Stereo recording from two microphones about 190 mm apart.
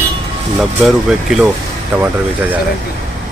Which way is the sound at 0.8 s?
Centre (ahead or behind).